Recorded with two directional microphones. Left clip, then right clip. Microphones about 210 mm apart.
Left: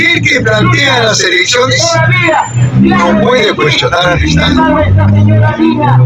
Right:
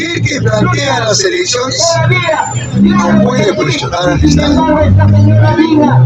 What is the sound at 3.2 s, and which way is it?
A man's voice, 20° left (ahead or behind).